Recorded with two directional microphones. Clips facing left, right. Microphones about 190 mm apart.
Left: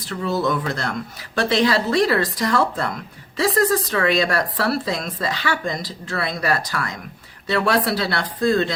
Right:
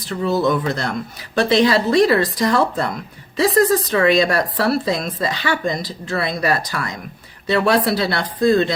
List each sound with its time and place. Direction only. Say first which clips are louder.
0.1 s a woman's voice: right 4 dB; 20° right (ahead or behind)